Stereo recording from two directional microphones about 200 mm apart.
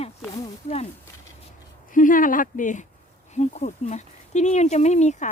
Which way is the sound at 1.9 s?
40° left (ahead or behind).